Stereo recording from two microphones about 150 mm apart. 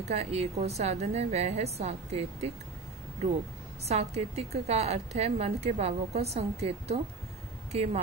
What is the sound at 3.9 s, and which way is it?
A woman's voice, 45° right (ahead or behind).